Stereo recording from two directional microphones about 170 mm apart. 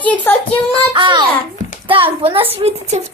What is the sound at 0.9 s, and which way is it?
A child's voice, 30° right (ahead or behind).